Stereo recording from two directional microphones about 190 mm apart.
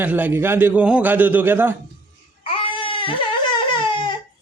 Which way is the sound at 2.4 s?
30° left (ahead or behind).